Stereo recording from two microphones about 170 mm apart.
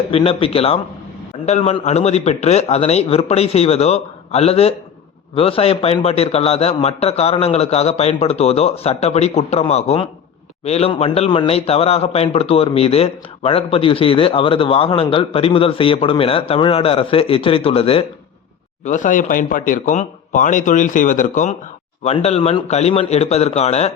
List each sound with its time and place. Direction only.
0.1 s a man's voice: 35° left (ahead or behind)
18.9 s a man's voice: 50° left (ahead or behind)